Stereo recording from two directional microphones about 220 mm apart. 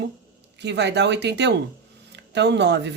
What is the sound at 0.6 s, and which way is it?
Speech, 50° right (ahead or behind).